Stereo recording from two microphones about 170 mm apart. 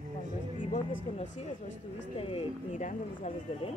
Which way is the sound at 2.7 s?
45° left (ahead or behind).